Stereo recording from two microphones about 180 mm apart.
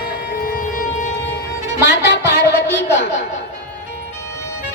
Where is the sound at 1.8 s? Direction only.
70° left (ahead or behind).